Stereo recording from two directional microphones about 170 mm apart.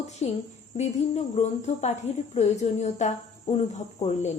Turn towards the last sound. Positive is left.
turn(degrees=40)  # may be behind; listen again after turning